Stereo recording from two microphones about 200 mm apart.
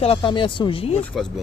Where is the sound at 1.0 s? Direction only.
5° left (ahead or behind).